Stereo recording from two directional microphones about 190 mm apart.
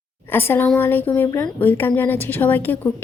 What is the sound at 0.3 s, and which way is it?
Speech, 10° left (ahead or behind).